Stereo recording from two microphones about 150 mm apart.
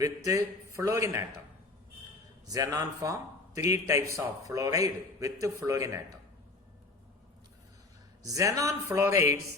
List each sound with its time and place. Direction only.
0.0 s a man's voice: 20° right (ahead or behind)
2.5 s a man's voice: 25° right (ahead or behind)
8.2 s a man's voice: 20° right (ahead or behind)